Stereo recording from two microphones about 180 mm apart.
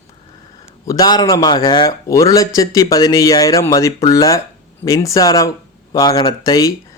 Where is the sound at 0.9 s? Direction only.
20° left (ahead or behind).